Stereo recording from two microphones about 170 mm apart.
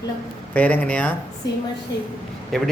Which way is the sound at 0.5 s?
10° left (ahead or behind).